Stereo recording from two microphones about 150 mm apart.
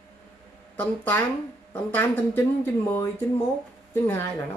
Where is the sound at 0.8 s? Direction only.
10° left (ahead or behind).